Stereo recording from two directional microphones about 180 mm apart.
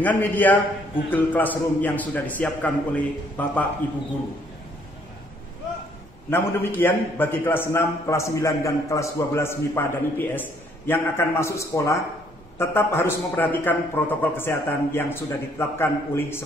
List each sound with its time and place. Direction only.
0.0 s a man's voice: 10° left (ahead or behind)
6.3 s a man's voice: 10° left (ahead or behind)